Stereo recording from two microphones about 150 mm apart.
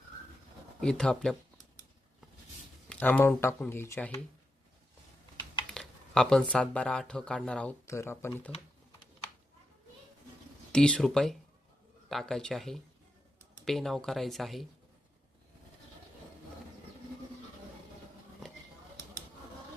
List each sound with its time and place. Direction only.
0.8 s speech: 5° left (ahead or behind)
2.9 s speech: 10° left (ahead or behind)
5.7 s speech: 5° left (ahead or behind)
10.7 s speech: 5° left (ahead or behind)